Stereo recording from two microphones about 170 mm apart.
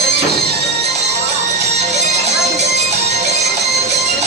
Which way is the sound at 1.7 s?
40° right (ahead or behind).